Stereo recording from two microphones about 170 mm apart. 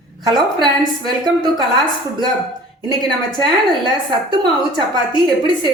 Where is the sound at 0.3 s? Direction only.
25° right (ahead or behind).